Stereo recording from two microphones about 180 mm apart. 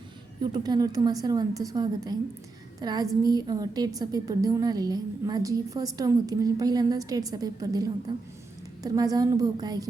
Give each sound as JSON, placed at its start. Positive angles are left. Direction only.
{"t": 0.5, "sound": "a woman's voice", "side_deg": -25}